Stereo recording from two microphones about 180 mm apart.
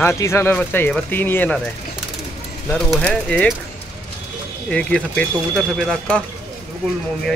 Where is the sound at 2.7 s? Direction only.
5° left (ahead or behind).